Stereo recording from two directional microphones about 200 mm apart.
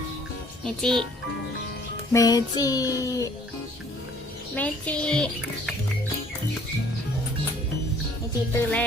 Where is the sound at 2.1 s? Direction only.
15° left (ahead or behind).